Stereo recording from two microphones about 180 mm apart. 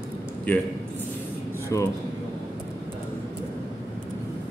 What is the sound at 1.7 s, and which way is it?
Speech, 15° left (ahead or behind).